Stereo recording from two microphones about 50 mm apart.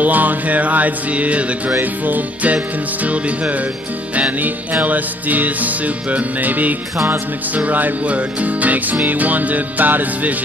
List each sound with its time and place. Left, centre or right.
0.0 s music: right
1.7 s music: right